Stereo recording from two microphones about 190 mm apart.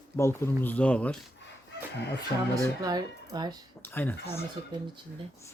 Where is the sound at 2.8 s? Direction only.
20° right (ahead or behind).